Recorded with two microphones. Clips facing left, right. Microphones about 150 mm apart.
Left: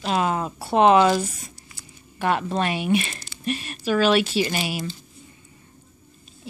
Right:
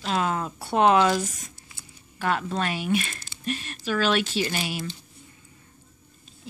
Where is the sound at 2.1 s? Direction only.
15° left (ahead or behind).